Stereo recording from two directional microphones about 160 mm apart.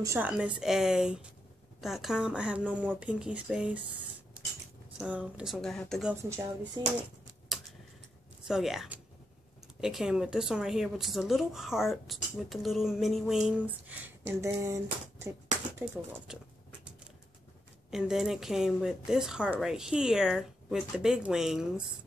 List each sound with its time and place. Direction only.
0.0 s speech: 15° right (ahead or behind)
4.9 s speech: 10° right (ahead or behind)
6.8 s speech: 25° right (ahead or behind)
7.5 s tick-tock: centre (ahead or behind)
8.5 s speech: centre (ahead or behind); by 14.8 s 20° right (ahead or behind)
15.8 s speech: 10° right (ahead or behind)
17.9 s speech: centre (ahead or behind)